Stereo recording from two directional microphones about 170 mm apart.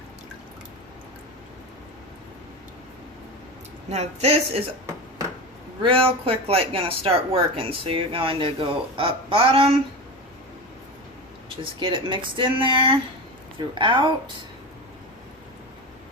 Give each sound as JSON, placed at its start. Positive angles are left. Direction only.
{"t": 3.8, "sound": "speech", "side_deg": -40}
{"t": 5.8, "sound": "speech", "side_deg": -35}
{"t": 11.4, "sound": "speech", "side_deg": -30}